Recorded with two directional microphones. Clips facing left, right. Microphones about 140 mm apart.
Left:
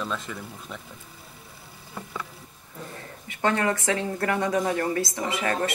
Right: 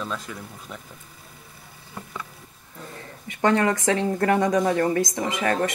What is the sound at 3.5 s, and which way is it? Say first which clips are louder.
A woman's voice: right 4 dB; 25° right (ahead or behind).